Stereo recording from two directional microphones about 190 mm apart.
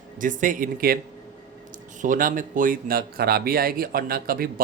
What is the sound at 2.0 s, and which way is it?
Speech, 45° right (ahead or behind).